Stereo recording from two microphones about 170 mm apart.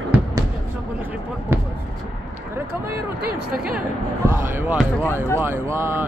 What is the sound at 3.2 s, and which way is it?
Speech, 60° right (ahead or behind).